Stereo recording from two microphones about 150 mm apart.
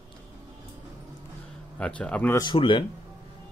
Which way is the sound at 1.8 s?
10° left (ahead or behind).